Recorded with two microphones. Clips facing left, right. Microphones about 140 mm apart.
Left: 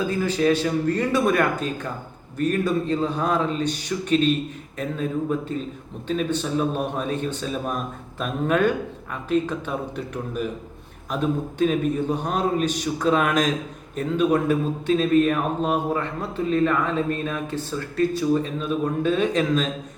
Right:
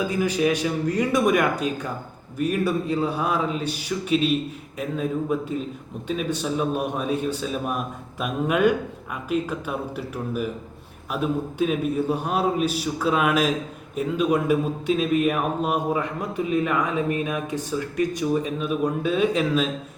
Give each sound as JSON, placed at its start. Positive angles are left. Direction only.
{"t": 0.1, "sound": "a man's voice", "side_deg": -10}